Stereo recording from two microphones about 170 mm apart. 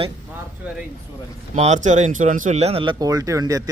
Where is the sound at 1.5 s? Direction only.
40° right (ahead or behind).